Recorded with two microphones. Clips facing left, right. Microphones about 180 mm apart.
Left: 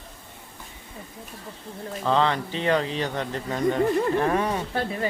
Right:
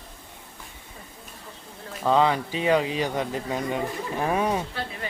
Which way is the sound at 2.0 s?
10° right (ahead or behind).